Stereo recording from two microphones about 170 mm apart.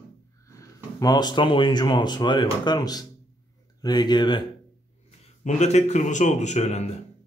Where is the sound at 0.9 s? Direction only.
25° left (ahead or behind).